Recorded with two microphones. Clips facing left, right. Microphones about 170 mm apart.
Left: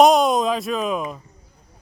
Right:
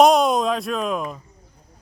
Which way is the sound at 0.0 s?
Centre (ahead or behind).